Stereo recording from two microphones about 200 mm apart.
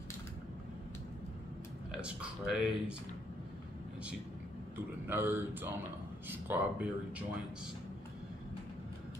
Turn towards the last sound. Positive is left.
turn(degrees=-10)  # may be behind; listen again after turning